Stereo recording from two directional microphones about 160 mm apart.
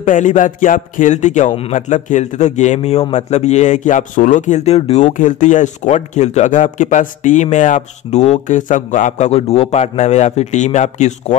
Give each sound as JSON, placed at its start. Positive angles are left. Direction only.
{"t": 0.0, "sound": "a man's voice", "side_deg": 50}